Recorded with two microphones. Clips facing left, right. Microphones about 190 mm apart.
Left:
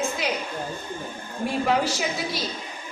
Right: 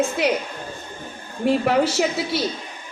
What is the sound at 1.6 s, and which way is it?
Speech, 70° right (ahead or behind).